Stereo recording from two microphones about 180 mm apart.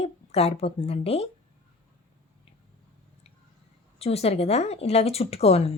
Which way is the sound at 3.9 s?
35° left (ahead or behind).